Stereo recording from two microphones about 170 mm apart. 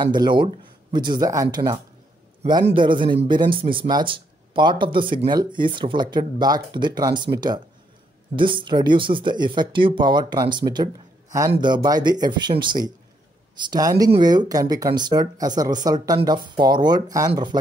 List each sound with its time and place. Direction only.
0.0 s speech: 25° right (ahead or behind)